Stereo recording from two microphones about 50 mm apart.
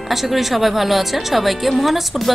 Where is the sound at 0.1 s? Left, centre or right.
Centre.